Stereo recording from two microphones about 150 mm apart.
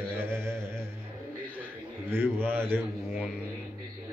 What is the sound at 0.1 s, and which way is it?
Mantra, 15° right (ahead or behind).